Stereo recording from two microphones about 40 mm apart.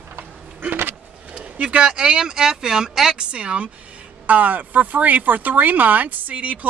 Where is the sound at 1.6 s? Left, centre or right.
Right.